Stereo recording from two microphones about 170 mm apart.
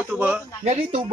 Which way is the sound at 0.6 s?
45° right (ahead or behind).